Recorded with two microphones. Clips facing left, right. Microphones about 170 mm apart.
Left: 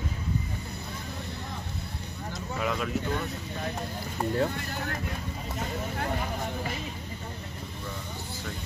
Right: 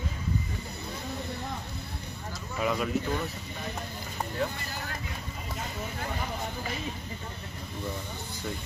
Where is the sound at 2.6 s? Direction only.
Centre (ahead or behind).